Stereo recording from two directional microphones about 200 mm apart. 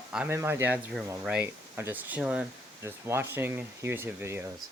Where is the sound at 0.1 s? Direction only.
5° right (ahead or behind).